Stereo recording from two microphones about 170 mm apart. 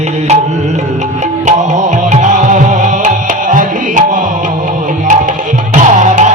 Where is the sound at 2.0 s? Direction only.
45° right (ahead or behind).